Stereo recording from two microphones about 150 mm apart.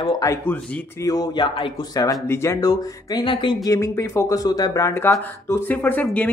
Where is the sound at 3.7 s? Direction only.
20° left (ahead or behind).